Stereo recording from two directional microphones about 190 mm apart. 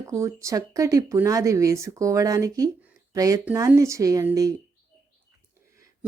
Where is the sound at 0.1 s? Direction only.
15° right (ahead or behind).